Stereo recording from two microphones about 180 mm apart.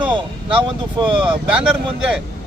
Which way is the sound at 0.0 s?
25° right (ahead or behind).